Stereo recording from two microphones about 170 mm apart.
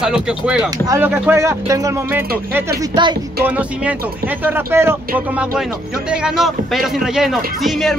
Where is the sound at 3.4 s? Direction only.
10° right (ahead or behind).